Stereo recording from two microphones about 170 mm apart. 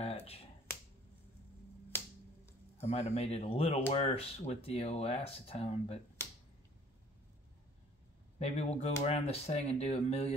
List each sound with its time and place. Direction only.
0.0 s finger snapping: 35° left (ahead or behind)
1.9 s finger snapping: 15° left (ahead or behind)
2.8 s speech: 40° left (ahead or behind)
8.4 s speech: 40° left (ahead or behind)